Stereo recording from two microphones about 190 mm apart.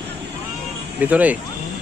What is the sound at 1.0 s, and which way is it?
Speech, 10° right (ahead or behind).